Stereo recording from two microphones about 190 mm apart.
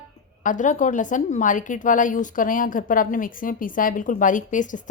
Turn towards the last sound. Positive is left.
turn(degrees=40)  # may be behind; listen again after turning